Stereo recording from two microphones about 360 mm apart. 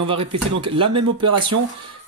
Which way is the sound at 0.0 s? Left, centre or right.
Centre.